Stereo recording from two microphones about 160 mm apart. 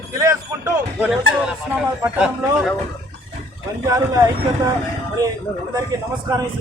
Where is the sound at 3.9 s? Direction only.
20° right (ahead or behind).